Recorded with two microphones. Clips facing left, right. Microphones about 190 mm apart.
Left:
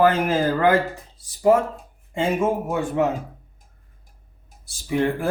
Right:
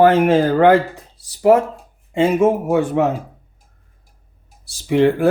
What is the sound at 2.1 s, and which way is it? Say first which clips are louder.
Speech: right 7 dB; 75° right (ahead or behind).